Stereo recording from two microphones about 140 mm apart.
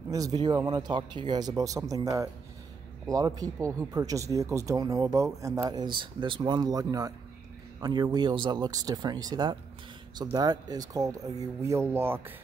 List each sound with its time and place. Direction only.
0.1 s speech: 25° right (ahead or behind)